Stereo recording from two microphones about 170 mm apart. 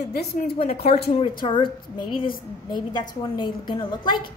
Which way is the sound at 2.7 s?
25° left (ahead or behind).